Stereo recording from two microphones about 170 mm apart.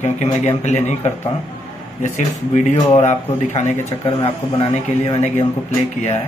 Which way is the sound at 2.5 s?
45° left (ahead or behind).